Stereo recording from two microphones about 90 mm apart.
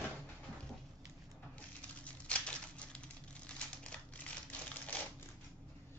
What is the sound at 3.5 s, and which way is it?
Crumpling, 15° left (ahead or behind).